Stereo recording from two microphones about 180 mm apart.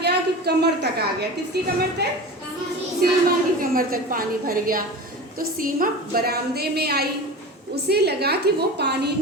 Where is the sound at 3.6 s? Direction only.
55° right (ahead or behind).